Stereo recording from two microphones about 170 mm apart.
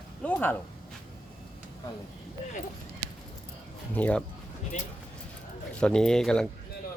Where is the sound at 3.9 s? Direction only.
10° left (ahead or behind).